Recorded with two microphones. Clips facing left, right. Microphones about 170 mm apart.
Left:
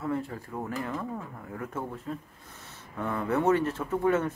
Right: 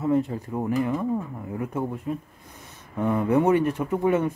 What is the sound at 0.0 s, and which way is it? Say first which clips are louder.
Speech: right 8 dB; 20° right (ahead or behind).